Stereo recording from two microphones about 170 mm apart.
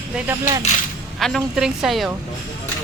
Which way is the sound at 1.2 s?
Centre (ahead or behind).